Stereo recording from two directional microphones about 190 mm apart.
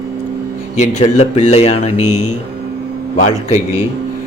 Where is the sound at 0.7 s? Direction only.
35° left (ahead or behind).